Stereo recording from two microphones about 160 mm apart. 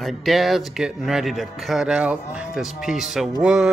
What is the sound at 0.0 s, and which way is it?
Speech, centre (ahead or behind).